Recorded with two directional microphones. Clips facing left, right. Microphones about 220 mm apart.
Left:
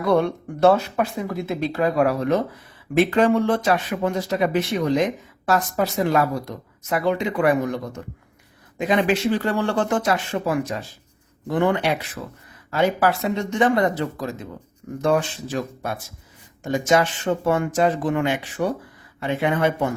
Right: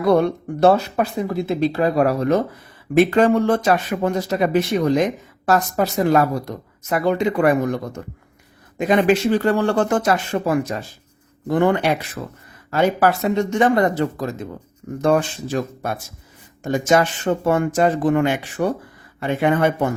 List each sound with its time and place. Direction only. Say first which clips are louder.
0.0 s speech: right 3 dB; 35° right (ahead or behind)